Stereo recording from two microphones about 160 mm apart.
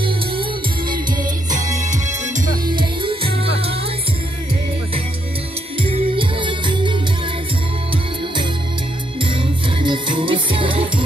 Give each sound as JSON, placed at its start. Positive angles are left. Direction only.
{"t": 1.5, "sound": "music", "side_deg": -50}
{"t": 2.7, "sound": "music", "side_deg": -30}
{"t": 5.8, "sound": "music", "side_deg": -35}
{"t": 9.8, "sound": "music", "side_deg": -30}